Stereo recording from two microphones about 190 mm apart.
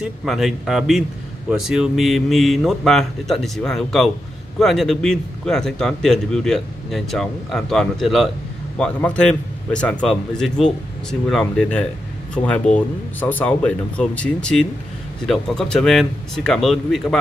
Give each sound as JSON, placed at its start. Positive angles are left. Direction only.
{"t": 0.0, "sound": "a man's voice", "side_deg": 0}